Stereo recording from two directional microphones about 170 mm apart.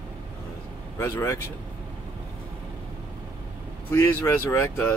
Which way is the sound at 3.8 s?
15° left (ahead or behind).